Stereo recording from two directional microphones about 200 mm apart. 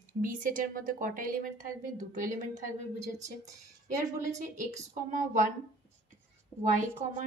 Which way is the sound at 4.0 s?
15° right (ahead or behind).